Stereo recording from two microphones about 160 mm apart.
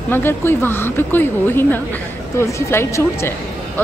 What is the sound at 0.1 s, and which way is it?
A woman's voice, 15° left (ahead or behind).